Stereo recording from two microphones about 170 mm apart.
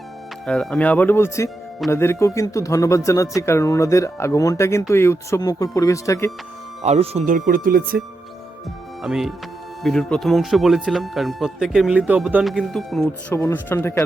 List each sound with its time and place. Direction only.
0.4 s speech: 5° left (ahead or behind)
6.8 s speech: 40° right (ahead or behind); by 8.0 s 60° right (ahead or behind)
9.0 s speech: centre (ahead or behind)
13.3 s speech: 15° left (ahead or behind)